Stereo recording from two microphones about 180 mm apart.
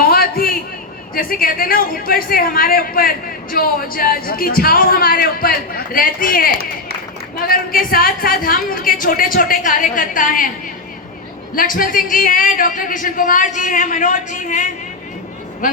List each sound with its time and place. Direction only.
0.0 s a sound: 55° left (ahead or behind)
1.1 s a woman's voice: 55° left (ahead or behind)
11.5 s a woman's voice: 50° left (ahead or behind)